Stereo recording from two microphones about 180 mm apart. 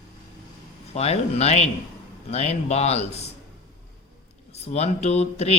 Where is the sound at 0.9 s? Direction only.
35° left (ahead or behind).